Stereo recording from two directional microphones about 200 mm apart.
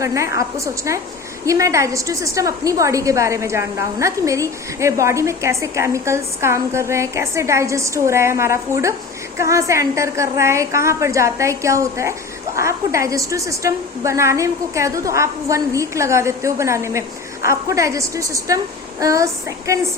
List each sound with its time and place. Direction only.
0.0 s a woman's voice: 15° right (ahead or behind)